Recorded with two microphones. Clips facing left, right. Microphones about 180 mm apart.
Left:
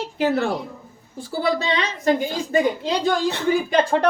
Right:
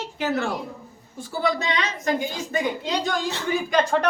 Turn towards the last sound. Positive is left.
turn(degrees=30)  # may be behind; listen again after turning